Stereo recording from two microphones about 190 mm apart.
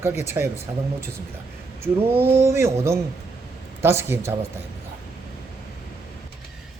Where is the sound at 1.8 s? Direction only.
10° right (ahead or behind).